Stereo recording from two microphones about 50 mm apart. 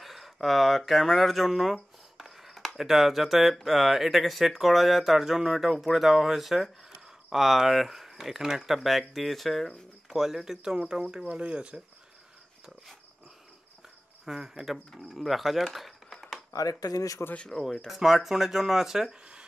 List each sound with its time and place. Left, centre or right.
0.0 s a sound: centre
2.8 s speech: centre; by 11.8 s right
14.2 s speech: centre
17.2 s speech: left
17.8 s speech: centre